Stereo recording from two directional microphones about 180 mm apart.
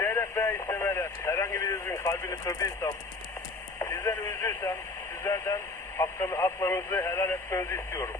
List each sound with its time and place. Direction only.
0.0 s radio: 15° left (ahead or behind)
3.8 s speech: 15° left (ahead or behind)